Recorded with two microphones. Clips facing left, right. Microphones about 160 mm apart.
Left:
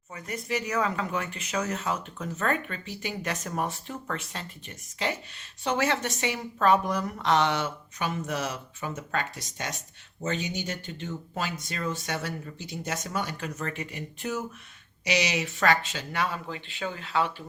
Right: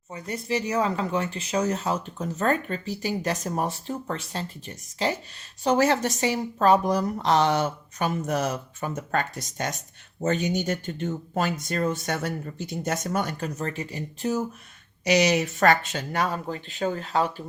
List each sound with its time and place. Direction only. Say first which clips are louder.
0.1 s speech: right 3 dB; 30° right (ahead or behind)